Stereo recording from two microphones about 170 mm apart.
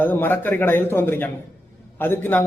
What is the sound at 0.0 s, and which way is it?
A man's voice, 10° left (ahead or behind).